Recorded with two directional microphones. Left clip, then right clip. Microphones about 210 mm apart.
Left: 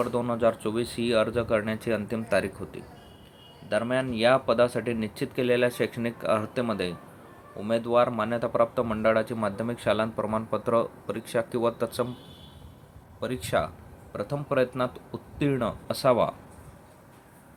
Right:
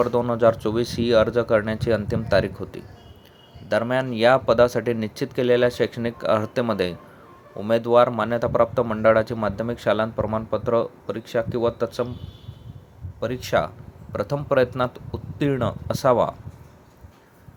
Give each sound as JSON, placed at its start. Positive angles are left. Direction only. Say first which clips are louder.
{"t": 0.0, "sound": "speech", "louder": "right 6 dB", "side_deg": -25}
{"t": 13.1, "sound": "speech", "louder": "right 5 dB", "side_deg": -20}